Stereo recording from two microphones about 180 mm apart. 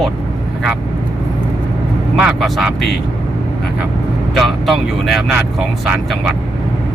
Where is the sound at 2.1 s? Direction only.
5° right (ahead or behind).